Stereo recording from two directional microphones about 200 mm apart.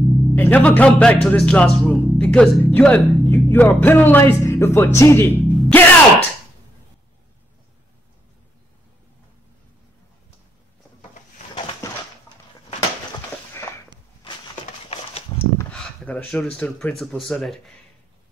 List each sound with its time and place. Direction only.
0.0 s music: centre (ahead or behind)
0.3 s speech: 10° left (ahead or behind)
5.4 s music: 5° left (ahead or behind)
14.9 s a sound: 30° left (ahead or behind)
15.5 s speech: 10° left (ahead or behind)